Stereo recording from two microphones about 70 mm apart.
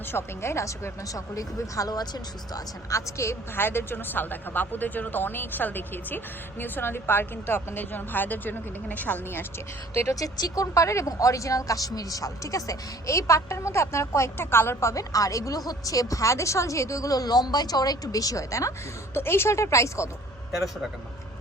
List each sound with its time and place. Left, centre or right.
0.1 s speech: left
1.1 s speech: left
2.9 s a woman's voice: left
9.9 s speech: left
10.2 s speech: left
19.1 s speech: left